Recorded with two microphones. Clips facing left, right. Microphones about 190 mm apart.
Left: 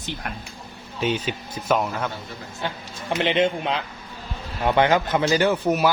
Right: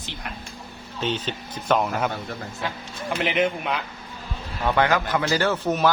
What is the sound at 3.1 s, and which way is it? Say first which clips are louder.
Speech: left 2 dB; 30° left (ahead or behind).